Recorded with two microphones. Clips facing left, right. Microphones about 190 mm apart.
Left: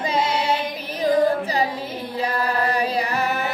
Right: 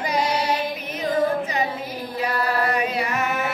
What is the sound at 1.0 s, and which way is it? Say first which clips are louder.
Child singing: left 3 dB; 35° left (ahead or behind).